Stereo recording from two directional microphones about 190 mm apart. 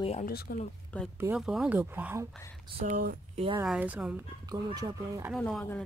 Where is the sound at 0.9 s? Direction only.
5° left (ahead or behind); by 2.3 s 10° right (ahead or behind).